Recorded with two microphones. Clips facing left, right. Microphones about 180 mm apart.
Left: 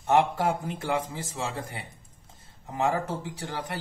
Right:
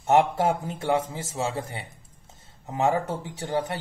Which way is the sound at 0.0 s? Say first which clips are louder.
Right 2 dB; 25° right (ahead or behind).